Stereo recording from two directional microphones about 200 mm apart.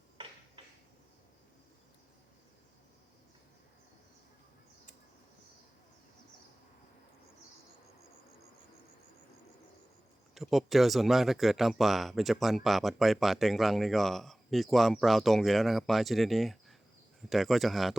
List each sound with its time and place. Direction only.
10.3 s speech: centre (ahead or behind)